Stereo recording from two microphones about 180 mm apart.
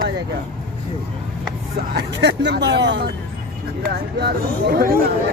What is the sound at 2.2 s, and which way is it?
Speech, 70° right (ahead or behind).